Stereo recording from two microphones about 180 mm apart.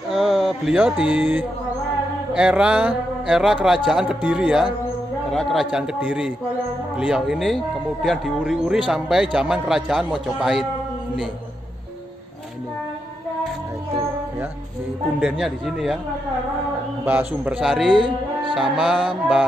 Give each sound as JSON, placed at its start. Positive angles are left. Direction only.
{"t": 0.1, "sound": "a sound", "side_deg": 0}
{"t": 2.3, "sound": "speech", "side_deg": -5}
{"t": 15.1, "sound": "speech", "side_deg": -5}
{"t": 17.0, "sound": "speech", "side_deg": -10}
{"t": 17.9, "sound": "music", "side_deg": -25}
{"t": 18.5, "sound": "speech", "side_deg": 0}